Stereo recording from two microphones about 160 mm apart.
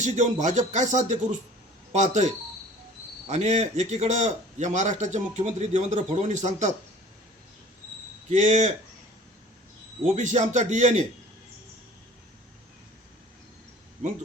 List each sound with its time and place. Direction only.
0.0 s a man's voice: 45° right (ahead or behind)
8.3 s a man's voice: 50° right (ahead or behind)
10.2 s a man's voice: 50° right (ahead or behind)